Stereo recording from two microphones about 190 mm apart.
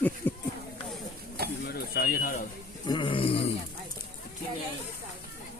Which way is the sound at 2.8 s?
25° left (ahead or behind).